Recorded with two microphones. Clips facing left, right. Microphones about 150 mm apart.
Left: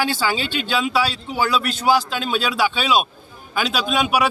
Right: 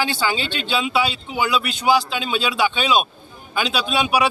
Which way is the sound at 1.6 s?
10° right (ahead or behind).